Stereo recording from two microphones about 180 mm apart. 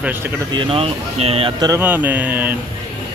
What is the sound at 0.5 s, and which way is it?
Speech, 30° right (ahead or behind).